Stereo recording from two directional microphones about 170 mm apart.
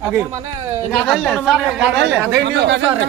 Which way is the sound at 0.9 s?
5° left (ahead or behind).